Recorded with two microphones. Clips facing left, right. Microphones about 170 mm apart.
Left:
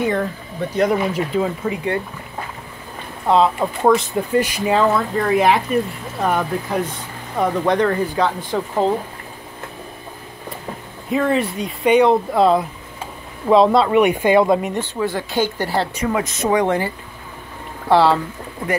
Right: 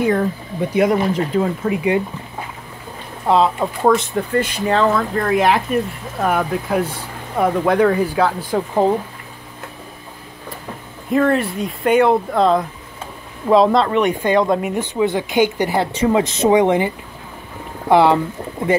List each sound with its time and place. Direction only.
0.6 s speech: 10° right (ahead or behind)
1.0 s speech: 5° left (ahead or behind)
3.3 s speech: centre (ahead or behind)
11.1 s speech: centre (ahead or behind)
14.7 s speech: 15° right (ahead or behind)
15.9 s speech: 25° right (ahead or behind)